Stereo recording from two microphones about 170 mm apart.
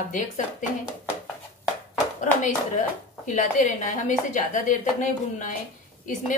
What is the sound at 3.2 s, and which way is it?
A woman's voice, 45° left (ahead or behind).